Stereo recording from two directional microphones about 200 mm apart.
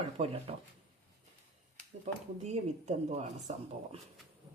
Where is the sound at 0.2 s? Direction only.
30° right (ahead or behind).